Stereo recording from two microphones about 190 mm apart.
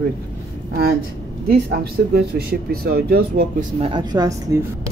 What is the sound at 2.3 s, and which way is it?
Speech, 55° right (ahead or behind).